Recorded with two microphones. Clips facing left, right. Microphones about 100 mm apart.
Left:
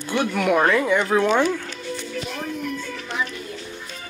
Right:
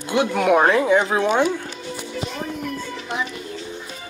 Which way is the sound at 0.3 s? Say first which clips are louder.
Right 2 dB; 35° right (ahead or behind).